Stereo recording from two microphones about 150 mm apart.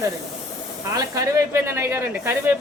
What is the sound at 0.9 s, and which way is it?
Speech, 20° right (ahead or behind).